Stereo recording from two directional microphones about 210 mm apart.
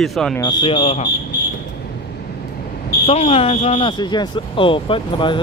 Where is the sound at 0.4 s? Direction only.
20° left (ahead or behind).